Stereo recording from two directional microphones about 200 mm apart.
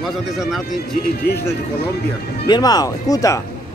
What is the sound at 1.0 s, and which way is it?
Speech, 50° left (ahead or behind).